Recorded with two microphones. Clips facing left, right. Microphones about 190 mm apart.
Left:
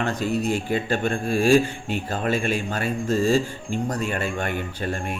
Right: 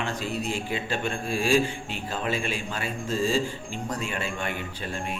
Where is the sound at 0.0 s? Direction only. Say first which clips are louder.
Left 6 dB; 40° left (ahead or behind).